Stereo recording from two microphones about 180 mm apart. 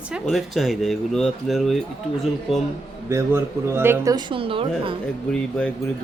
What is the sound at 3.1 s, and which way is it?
A woman's voice, 15° right (ahead or behind).